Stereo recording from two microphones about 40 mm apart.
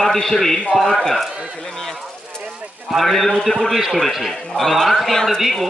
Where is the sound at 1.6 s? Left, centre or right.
Centre.